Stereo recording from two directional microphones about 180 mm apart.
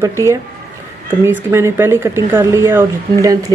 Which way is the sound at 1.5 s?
15° right (ahead or behind).